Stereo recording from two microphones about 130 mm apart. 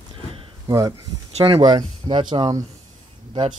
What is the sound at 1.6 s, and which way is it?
Speech, 35° right (ahead or behind).